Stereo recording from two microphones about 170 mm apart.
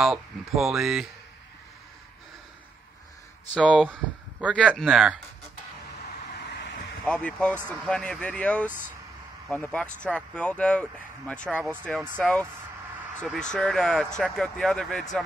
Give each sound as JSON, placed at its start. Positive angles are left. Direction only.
{"t": 0.0, "sound": "speech", "side_deg": 0}
{"t": 3.6, "sound": "speech", "side_deg": 5}
{"t": 3.9, "sound": "speech", "side_deg": -5}
{"t": 6.3, "sound": "vehicle", "side_deg": 90}
{"t": 7.1, "sound": "speech", "side_deg": 5}